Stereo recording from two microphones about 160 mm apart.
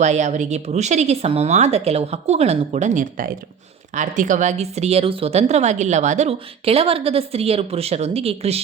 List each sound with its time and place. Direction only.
0.0 s a woman's voice: 45° right (ahead or behind)